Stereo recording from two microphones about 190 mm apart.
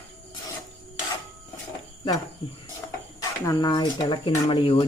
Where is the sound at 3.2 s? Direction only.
20° left (ahead or behind).